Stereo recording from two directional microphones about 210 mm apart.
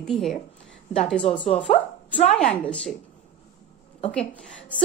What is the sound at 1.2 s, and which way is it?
Speech, 25° left (ahead or behind).